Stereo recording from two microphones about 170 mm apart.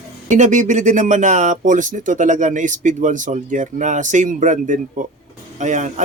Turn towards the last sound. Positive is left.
turn(degrees=-45)  # may be behind; listen again after turning